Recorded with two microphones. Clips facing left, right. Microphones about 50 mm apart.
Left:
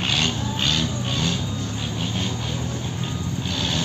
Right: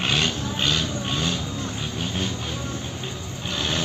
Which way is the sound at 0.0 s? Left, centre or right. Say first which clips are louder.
Even; centre.